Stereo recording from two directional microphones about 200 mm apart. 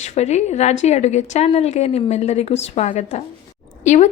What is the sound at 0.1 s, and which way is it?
A woman's voice, 35° left (ahead or behind).